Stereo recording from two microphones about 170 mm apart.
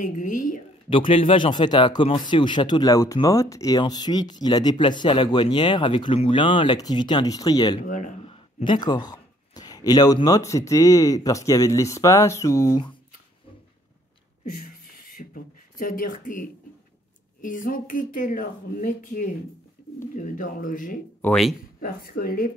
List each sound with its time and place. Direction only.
0.0 s speech: 50° left (ahead or behind)
0.8 s speech: 30° left (ahead or behind)
7.8 s speech: 50° left (ahead or behind)
8.2 s speech: 30° left (ahead or behind)
15.8 s speech: 55° left (ahead or behind)
21.2 s speech: 5° left (ahead or behind)
21.8 s speech: 60° left (ahead or behind)